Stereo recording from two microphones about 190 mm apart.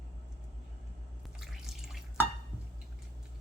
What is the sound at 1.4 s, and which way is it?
Drip, centre (ahead or behind).